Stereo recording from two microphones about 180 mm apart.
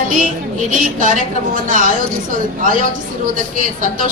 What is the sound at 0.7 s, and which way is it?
A woman's voice, 45° right (ahead or behind).